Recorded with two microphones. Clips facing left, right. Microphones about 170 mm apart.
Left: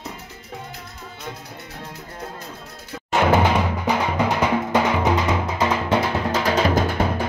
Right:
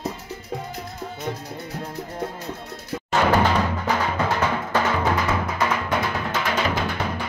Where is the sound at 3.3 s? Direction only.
15° left (ahead or behind).